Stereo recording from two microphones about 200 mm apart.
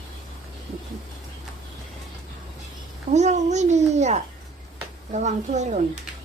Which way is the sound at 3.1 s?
35° right (ahead or behind).